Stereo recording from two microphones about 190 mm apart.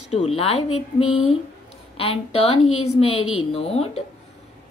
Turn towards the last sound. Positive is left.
turn(degrees=30)  # may be behind; listen again after turning